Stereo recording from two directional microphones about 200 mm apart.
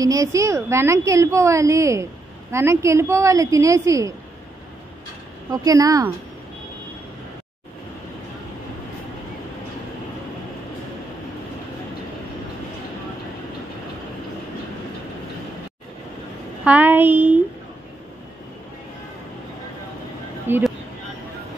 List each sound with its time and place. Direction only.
0.0 s a woman's voice: 15° right (ahead or behind)
5.5 s a woman's voice: 15° right (ahead or behind)
16.6 s a woman's voice: 10° right (ahead or behind)
20.4 s a sound: 10° right (ahead or behind)